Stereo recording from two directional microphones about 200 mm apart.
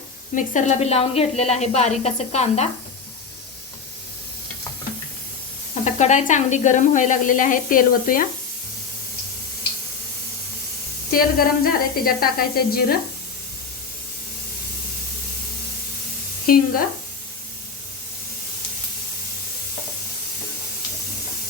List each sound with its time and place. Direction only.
0.3 s speech: 35° left (ahead or behind)
5.8 s speech: 35° left (ahead or behind)
11.1 s a woman's voice: 45° left (ahead or behind)
16.5 s a woman's voice: 45° left (ahead or behind)